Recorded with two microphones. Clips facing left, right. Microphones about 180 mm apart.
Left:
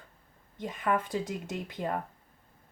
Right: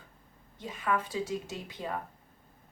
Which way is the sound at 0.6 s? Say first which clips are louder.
Left 2 dB; 55° left (ahead or behind).